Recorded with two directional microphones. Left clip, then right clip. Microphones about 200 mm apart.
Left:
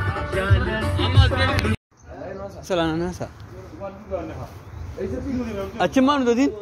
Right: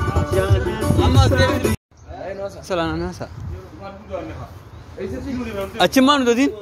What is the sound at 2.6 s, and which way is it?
Speech, 10° left (ahead or behind).